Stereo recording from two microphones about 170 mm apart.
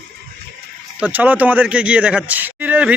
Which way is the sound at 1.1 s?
10° right (ahead or behind).